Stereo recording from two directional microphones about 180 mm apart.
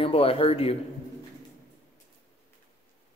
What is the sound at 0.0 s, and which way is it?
Speech, 30° left (ahead or behind).